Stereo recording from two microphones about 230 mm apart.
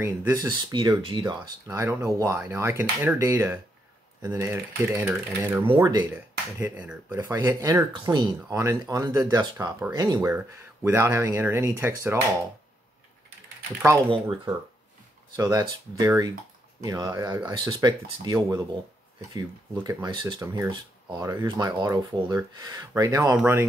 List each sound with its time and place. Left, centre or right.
0.0 s speech: centre
6.1 s speech: centre
14.1 s speech: centre